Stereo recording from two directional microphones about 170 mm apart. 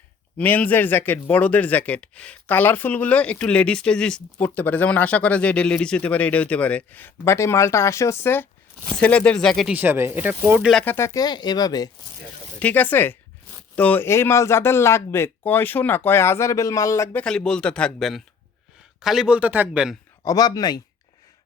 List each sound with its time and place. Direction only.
0.3 s speech: 10° left (ahead or behind)
9.7 s speech: 10° right (ahead or behind)
10.8 s speech: 15° left (ahead or behind)
12.5 s speech: 10° left (ahead or behind); by 20.0 s 5° right (ahead or behind)
20.2 s speech: 20° left (ahead or behind)